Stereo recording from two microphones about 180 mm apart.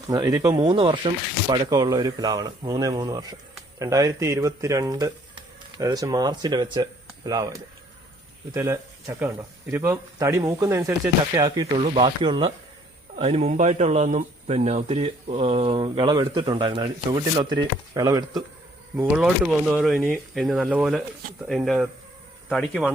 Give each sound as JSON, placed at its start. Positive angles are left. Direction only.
{"t": 0.1, "sound": "speech", "side_deg": -20}
{"t": 8.5, "sound": "speech", "side_deg": -15}
{"t": 18.9, "sound": "speech", "side_deg": -5}